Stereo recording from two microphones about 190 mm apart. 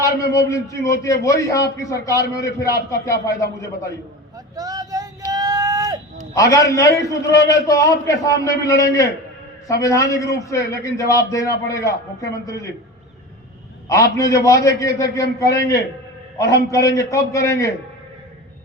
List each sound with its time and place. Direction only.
0.0 s a man's voice: 15° left (ahead or behind)
4.5 s a sound: 20° right (ahead or behind)
6.3 s a man's voice: 15° left (ahead or behind)
13.8 s a man's voice: 15° left (ahead or behind)
16.7 s a man's voice: 15° left (ahead or behind)